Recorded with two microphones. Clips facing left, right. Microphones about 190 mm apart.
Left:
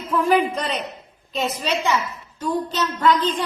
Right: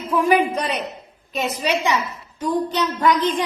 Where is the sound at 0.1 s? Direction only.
10° right (ahead or behind).